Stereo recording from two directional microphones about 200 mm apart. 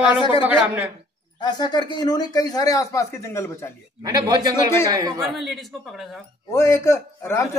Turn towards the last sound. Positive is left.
turn(degrees=15)  # may be behind; listen again after turning